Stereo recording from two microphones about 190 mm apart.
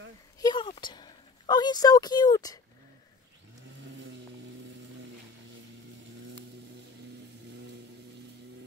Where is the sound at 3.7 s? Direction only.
75° right (ahead or behind).